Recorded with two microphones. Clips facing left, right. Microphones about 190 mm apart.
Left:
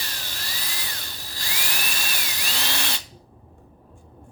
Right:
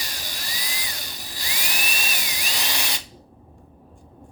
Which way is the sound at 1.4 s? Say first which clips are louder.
Right 1 dB; 15° right (ahead or behind).